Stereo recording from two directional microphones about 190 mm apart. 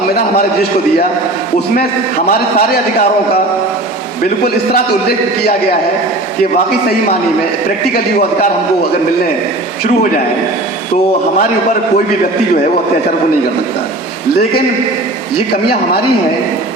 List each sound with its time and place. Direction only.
2.6 s a man's voice: 55° left (ahead or behind)
4.4 s a man's voice: 55° left (ahead or behind)